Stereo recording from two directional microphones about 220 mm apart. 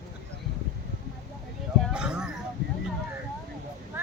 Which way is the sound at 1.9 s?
5° right (ahead or behind).